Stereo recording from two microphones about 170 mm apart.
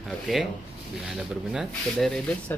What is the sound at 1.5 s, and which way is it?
Speech, centre (ahead or behind).